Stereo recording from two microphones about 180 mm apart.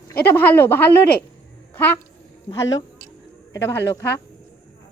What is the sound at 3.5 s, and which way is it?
Speech, 15° left (ahead or behind).